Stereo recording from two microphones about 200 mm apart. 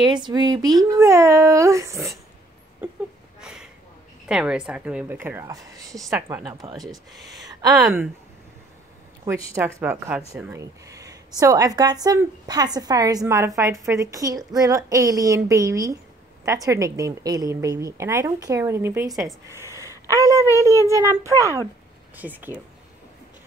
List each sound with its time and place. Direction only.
0.0 s a woman's voice: 20° right (ahead or behind)
3.3 s a sound: 5° right (ahead or behind)
4.3 s a woman's voice: 5° right (ahead or behind); by 6.8 s 20° right (ahead or behind)
7.1 s speech: centre (ahead or behind)
9.6 s a woman's voice: 10° right (ahead or behind)
19.8 s a sound: 15° right (ahead or behind)
20.6 s a woman's voice: 15° right (ahead or behind)